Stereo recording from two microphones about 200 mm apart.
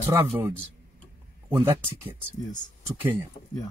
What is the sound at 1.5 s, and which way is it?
Speech, 10° right (ahead or behind).